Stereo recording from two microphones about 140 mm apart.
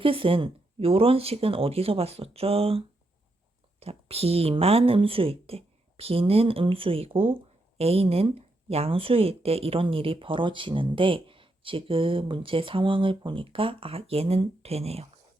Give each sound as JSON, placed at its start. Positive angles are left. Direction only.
{"t": 0.0, "sound": "speech", "side_deg": -40}